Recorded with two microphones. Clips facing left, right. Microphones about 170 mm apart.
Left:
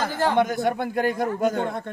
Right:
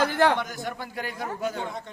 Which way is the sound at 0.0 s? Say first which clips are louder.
Right 2 dB; 70° right (ahead or behind).